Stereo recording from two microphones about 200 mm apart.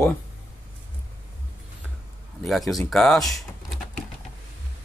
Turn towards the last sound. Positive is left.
turn(degrees=0)  # may be behind; listen again after turning